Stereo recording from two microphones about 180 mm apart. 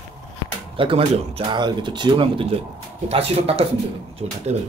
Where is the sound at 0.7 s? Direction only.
30° right (ahead or behind).